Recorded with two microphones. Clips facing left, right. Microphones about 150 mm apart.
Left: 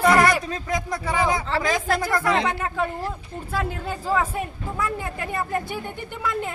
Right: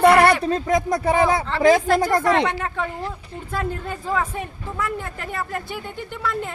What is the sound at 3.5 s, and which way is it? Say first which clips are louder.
Speech: right 1 dB; 5° left (ahead or behind).